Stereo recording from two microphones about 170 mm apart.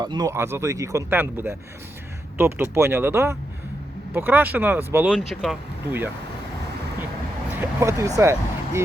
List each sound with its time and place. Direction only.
0.0 s speech: 25° right (ahead or behind)
5.1 s speech: centre (ahead or behind)
7.5 s speech: 15° right (ahead or behind)